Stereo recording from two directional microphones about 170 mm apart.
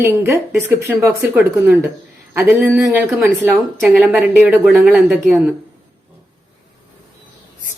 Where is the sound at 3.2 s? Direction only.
5° right (ahead or behind).